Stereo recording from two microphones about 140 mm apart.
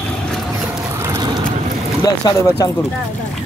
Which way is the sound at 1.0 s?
25° right (ahead or behind).